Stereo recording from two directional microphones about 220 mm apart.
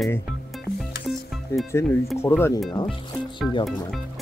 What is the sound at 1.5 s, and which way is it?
Speech, 10° left (ahead or behind).